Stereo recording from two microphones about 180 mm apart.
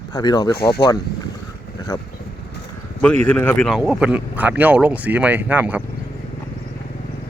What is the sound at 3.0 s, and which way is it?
Speech, 5° left (ahead or behind).